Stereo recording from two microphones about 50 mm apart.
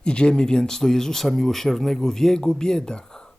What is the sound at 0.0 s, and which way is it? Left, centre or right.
Speech, centre.